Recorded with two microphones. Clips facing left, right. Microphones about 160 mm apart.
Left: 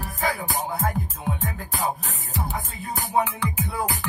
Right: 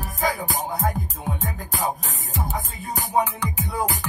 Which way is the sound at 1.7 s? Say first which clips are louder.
Right 1 dB; 40° right (ahead or behind).